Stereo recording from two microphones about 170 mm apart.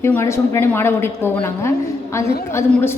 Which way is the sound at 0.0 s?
15° left (ahead or behind).